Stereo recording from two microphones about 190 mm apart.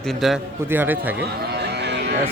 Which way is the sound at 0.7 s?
10° right (ahead or behind).